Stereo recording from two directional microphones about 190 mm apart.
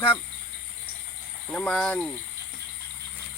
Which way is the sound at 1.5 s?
5° left (ahead or behind).